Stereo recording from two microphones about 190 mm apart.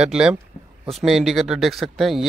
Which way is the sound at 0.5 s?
30° left (ahead or behind).